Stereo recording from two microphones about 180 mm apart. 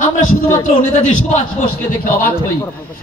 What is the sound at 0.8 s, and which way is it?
A man's voice, 45° left (ahead or behind).